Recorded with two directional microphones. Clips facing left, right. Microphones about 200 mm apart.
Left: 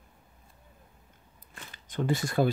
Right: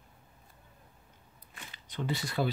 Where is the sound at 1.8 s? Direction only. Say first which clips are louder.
Left 6 dB; 50° left (ahead or behind).